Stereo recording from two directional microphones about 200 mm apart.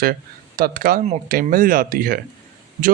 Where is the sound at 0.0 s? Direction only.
45° right (ahead or behind).